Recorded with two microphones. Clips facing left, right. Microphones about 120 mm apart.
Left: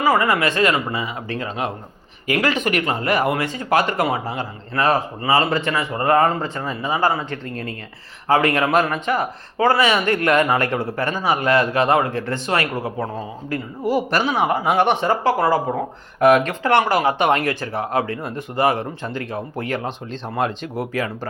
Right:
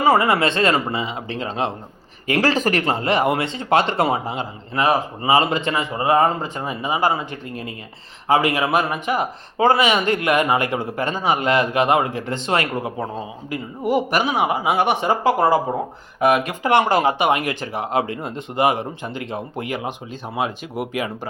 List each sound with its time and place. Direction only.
0.0 s speech: 25° right (ahead or behind)
16.8 s speech: 25° right (ahead or behind)
17.2 s speech: 10° right (ahead or behind)